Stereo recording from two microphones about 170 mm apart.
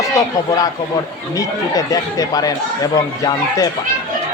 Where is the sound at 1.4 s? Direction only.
20° left (ahead or behind).